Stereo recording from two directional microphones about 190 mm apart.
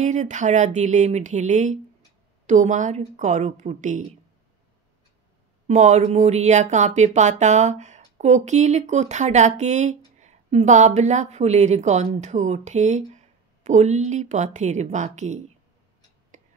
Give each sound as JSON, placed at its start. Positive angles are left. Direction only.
{"t": 0.0, "sound": "speech", "side_deg": -40}
{"t": 5.7, "sound": "speech", "side_deg": -35}
{"t": 16.3, "sound": "a sound", "side_deg": -40}